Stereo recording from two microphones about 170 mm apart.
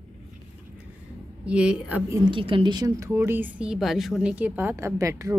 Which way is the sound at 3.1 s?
10° right (ahead or behind).